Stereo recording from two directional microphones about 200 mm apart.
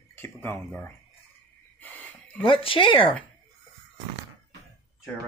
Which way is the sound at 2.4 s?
25° left (ahead or behind).